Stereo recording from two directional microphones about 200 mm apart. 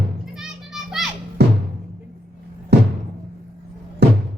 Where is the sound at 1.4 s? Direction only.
55° right (ahead or behind).